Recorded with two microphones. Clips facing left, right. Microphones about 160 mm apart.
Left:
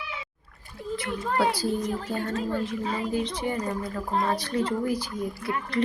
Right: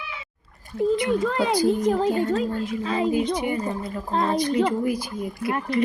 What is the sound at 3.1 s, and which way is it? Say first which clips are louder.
A woman's voice: right 5 dB; 10° right (ahead or behind).